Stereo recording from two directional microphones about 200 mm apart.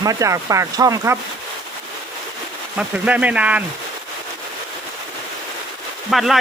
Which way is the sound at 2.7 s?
5° right (ahead or behind).